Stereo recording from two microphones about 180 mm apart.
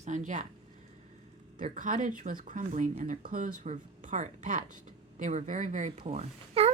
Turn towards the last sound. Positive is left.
turn(degrees=-35)  # may be behind; listen again after turning